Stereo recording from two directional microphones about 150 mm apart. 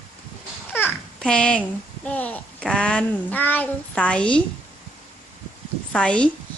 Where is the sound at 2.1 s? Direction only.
10° left (ahead or behind).